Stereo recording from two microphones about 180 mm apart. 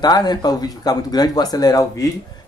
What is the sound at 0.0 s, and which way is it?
Speech, 20° left (ahead or behind).